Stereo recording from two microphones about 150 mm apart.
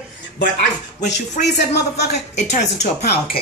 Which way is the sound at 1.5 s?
90° left.